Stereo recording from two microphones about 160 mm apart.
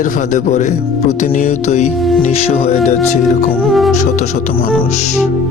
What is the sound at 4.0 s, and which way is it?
Speech, 50° left (ahead or behind).